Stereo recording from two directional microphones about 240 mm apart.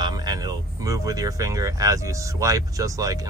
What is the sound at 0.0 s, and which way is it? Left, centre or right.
Speech, centre.